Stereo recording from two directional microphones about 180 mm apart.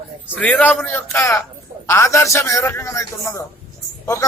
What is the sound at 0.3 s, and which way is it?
A man's voice, 10° left (ahead or behind).